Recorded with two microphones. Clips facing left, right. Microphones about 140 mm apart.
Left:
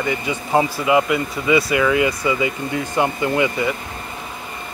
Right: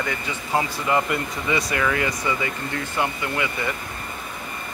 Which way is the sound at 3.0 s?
20° left (ahead or behind).